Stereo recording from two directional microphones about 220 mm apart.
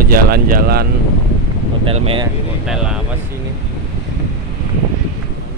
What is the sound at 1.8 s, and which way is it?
Speech, 25° right (ahead or behind).